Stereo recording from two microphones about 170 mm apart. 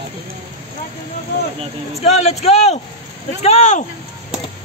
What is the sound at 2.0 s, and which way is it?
Speech, 40° left (ahead or behind).